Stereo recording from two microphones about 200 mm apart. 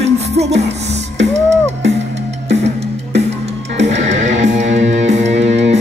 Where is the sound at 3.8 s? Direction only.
65° right (ahead or behind).